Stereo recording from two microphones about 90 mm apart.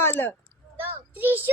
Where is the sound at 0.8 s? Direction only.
20° right (ahead or behind).